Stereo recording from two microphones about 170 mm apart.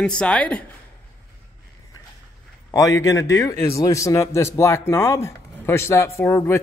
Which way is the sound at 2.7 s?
20° left (ahead or behind).